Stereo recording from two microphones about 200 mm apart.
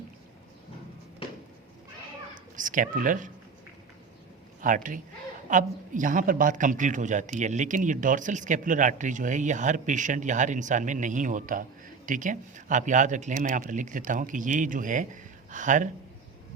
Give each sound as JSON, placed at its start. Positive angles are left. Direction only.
{"t": 2.6, "sound": "a woman's voice", "side_deg": -40}
{"t": 4.6, "sound": "a woman's voice", "side_deg": -40}